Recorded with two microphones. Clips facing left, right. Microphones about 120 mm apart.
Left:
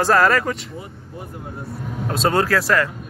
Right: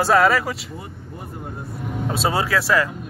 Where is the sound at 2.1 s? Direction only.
5° right (ahead or behind).